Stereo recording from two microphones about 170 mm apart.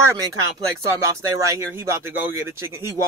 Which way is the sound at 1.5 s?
15° right (ahead or behind).